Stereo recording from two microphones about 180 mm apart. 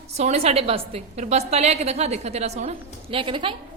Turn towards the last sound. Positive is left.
turn(degrees=-30)  # may be behind; listen again after turning